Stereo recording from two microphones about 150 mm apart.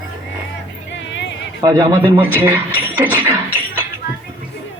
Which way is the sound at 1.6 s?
30° right (ahead or behind).